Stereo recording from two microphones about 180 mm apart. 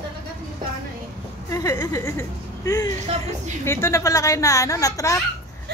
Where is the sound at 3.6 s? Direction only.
15° left (ahead or behind).